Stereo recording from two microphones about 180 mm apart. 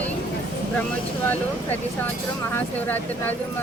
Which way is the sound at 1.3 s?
10° left (ahead or behind).